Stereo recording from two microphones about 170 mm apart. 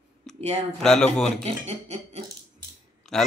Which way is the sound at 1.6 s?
40° right (ahead or behind).